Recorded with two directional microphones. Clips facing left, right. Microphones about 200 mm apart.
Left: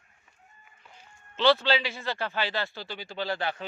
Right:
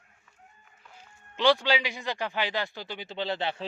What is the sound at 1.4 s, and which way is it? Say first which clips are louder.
Speech: left 1 dB; 15° right (ahead or behind).